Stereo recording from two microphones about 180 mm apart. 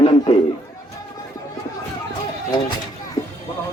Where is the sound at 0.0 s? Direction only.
30° left (ahead or behind).